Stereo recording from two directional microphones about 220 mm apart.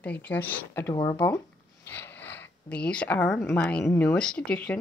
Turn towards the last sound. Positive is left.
turn(degrees=5)  # may be behind; listen again after turning